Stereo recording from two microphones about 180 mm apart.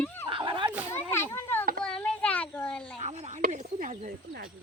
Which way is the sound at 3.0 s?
40° right (ahead or behind).